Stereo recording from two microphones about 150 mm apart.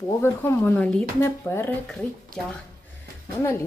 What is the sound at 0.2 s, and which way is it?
Speech, 15° left (ahead or behind).